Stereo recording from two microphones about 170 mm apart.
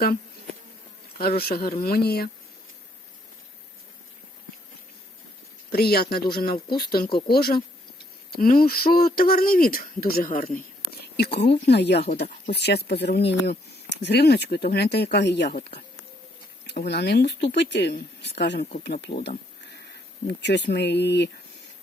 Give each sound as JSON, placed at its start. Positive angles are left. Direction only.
{"t": 1.4, "sound": "speech", "side_deg": 65}
{"t": 5.7, "sound": "speech", "side_deg": 70}
{"t": 11.2, "sound": "speech", "side_deg": 80}
{"t": 20.2, "sound": "speech", "side_deg": 90}